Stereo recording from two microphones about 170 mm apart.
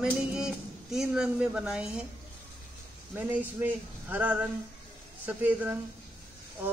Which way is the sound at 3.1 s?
10° right (ahead or behind).